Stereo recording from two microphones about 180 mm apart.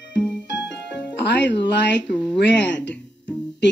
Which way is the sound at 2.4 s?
80° left.